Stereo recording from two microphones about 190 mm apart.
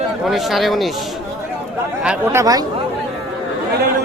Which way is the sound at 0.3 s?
Centre (ahead or behind).